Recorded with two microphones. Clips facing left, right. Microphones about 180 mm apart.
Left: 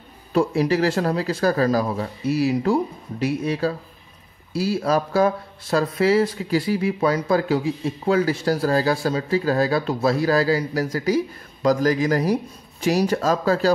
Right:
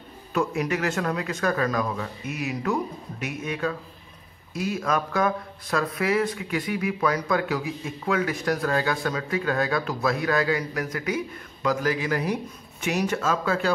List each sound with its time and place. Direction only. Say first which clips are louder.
0.3 s speech: left 6 dB; 30° left (ahead or behind)